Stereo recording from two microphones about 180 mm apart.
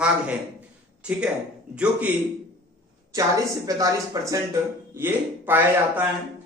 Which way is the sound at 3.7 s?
20° right (ahead or behind).